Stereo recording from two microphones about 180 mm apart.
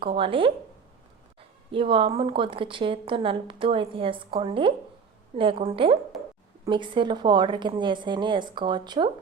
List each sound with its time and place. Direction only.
0.0 s a woman's voice: 30° right (ahead or behind)
1.7 s a woman's voice: 30° right (ahead or behind)